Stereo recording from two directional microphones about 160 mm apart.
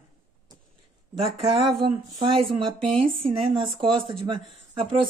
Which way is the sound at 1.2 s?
35° right (ahead or behind).